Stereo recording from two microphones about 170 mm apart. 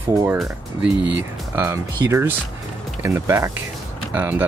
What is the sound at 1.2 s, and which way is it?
Speech, 15° right (ahead or behind).